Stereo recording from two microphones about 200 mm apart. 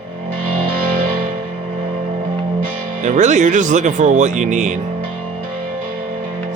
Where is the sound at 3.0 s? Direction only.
35° right (ahead or behind).